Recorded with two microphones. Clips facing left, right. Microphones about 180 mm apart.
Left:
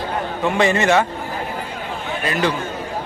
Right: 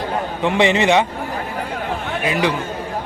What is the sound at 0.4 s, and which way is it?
Speech, 20° right (ahead or behind).